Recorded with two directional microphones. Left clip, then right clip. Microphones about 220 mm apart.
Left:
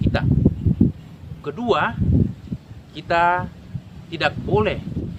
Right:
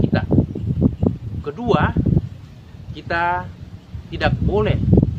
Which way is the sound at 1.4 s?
45° left (ahead or behind).